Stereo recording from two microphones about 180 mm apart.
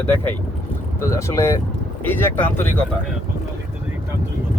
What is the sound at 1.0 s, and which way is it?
Speech, 15° left (ahead or behind).